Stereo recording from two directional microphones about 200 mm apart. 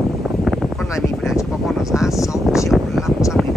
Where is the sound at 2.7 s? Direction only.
Centre (ahead or behind).